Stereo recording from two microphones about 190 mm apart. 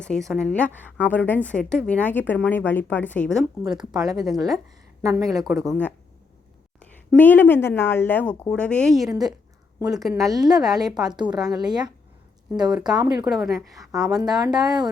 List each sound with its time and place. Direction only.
0.0 s speech: 5° left (ahead or behind)
5.0 s a woman's voice: 15° right (ahead or behind)
5.4 s speech: centre (ahead or behind)
7.1 s speech: 10° left (ahead or behind)
11.0 s speech: 25° right (ahead or behind)
13.2 s speech: centre (ahead or behind)
14.1 s speech: 20° right (ahead or behind)